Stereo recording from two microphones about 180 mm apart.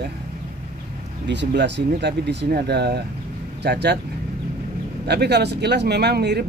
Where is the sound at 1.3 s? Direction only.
75° right (ahead or behind).